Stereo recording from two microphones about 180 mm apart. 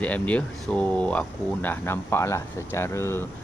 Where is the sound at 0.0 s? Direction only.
5° left (ahead or behind).